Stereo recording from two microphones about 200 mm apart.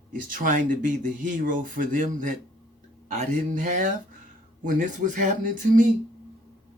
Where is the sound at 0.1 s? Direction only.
40° right (ahead or behind).